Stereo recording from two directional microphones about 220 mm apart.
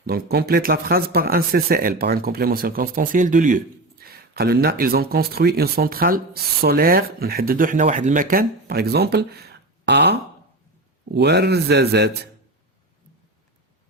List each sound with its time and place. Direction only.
0.0 s speech: 45° right (ahead or behind)